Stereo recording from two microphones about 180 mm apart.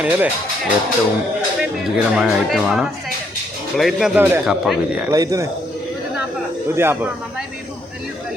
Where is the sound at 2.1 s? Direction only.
Centre (ahead or behind).